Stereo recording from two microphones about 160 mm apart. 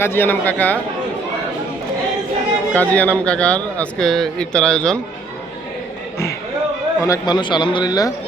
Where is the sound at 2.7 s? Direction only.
10° left (ahead or behind).